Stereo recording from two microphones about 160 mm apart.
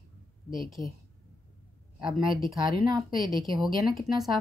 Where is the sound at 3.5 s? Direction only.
Centre (ahead or behind).